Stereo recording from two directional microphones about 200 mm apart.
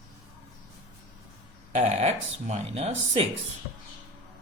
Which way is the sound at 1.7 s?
35° right (ahead or behind).